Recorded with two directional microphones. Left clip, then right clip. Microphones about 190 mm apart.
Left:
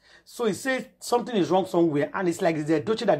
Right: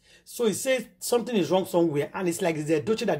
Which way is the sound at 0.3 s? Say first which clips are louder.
Right 1 dB; centre (ahead or behind).